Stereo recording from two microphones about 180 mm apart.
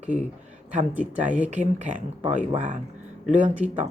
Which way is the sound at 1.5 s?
45° right (ahead or behind).